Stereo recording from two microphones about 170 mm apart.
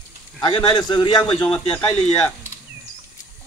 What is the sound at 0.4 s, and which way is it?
Speech, 25° left (ahead or behind).